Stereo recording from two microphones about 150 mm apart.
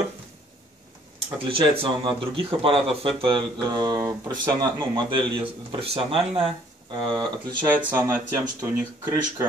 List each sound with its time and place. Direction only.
1.5 s speech: 35° right (ahead or behind)
7.6 s speech: 15° right (ahead or behind)